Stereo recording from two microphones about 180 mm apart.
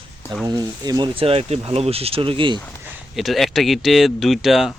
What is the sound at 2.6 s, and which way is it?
Speech, 10° left (ahead or behind).